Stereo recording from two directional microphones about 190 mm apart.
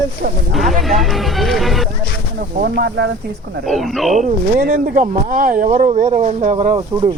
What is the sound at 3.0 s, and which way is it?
Speech, 65° right (ahead or behind).